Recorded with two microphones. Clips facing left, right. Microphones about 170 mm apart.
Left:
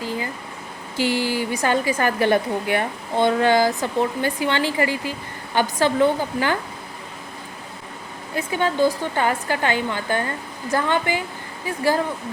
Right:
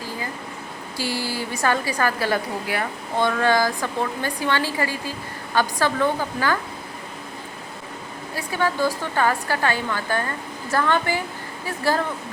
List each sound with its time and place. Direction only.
0.9 s a woman's voice: 15° left (ahead or behind)
8.4 s a woman's voice: 20° left (ahead or behind)